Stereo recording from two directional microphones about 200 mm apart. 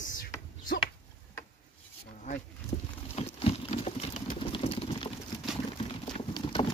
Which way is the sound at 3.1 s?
30° left (ahead or behind).